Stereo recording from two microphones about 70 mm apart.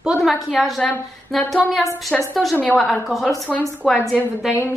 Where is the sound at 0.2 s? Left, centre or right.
Centre.